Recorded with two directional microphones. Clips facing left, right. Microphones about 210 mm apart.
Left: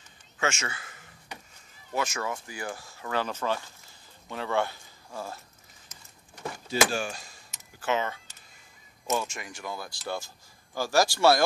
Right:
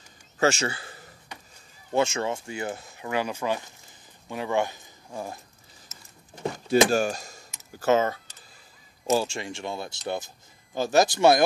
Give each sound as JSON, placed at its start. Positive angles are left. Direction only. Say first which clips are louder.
{"t": 0.4, "sound": "speech", "louder": "right 7 dB", "side_deg": -35}
{"t": 6.7, "sound": "speech", "louder": "right 7 dB", "side_deg": -40}
{"t": 9.1, "sound": "speech", "louder": "right 6 dB", "side_deg": -30}